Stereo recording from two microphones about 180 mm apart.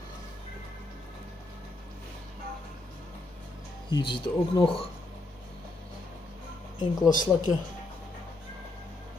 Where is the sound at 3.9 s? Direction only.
30° left (ahead or behind).